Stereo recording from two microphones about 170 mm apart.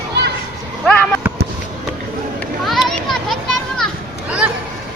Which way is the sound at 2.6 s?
Centre (ahead or behind).